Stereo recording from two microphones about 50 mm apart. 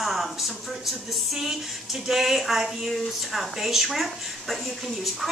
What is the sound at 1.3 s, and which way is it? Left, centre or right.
Speech, centre.